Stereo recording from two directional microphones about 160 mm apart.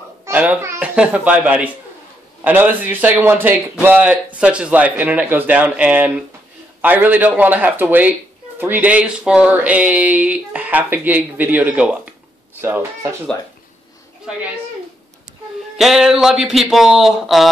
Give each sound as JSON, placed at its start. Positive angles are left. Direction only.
{"t": 0.2, "sound": "a child's voice", "side_deg": -10}
{"t": 15.8, "sound": "speech", "side_deg": 0}